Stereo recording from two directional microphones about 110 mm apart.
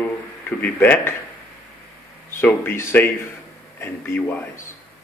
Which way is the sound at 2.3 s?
20° left (ahead or behind).